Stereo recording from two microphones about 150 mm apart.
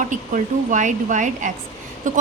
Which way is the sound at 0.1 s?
55° right (ahead or behind).